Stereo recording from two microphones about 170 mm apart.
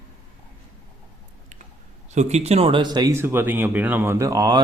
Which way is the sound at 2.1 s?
40° right (ahead or behind).